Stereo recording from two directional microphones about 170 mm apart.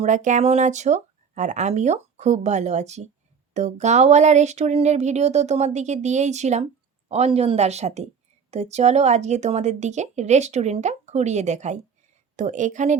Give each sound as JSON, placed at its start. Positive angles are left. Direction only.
{"t": 0.0, "sound": "a woman's voice", "side_deg": -45}